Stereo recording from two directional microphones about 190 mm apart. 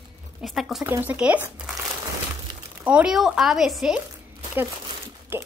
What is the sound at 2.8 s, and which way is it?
A woman's voice, 5° right (ahead or behind).